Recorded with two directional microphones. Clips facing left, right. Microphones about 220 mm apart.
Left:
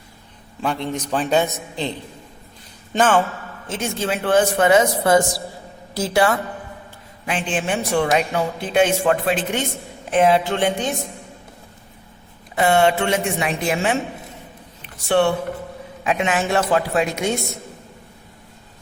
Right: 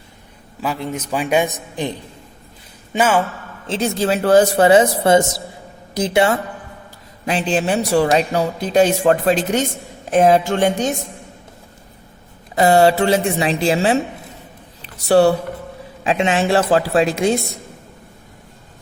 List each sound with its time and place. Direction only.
0.6 s a man's voice: 5° right (ahead or behind)
3.7 s a man's voice: 35° right (ahead or behind)
7.3 s a man's voice: 40° right (ahead or behind)
12.5 s a man's voice: 35° right (ahead or behind)
14.8 s a sound: 40° right (ahead or behind)
16.0 s a man's voice: 30° right (ahead or behind)